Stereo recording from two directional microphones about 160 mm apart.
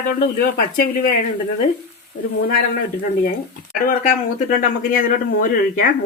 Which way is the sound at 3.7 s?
60° left (ahead or behind).